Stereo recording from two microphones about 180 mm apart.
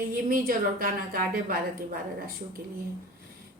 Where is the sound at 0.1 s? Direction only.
55° right (ahead or behind).